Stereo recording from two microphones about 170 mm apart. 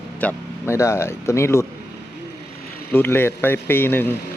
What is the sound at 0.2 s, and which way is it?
Speech, 10° left (ahead or behind).